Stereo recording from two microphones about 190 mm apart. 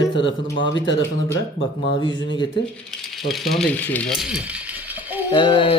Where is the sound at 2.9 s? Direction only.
Centre (ahead or behind).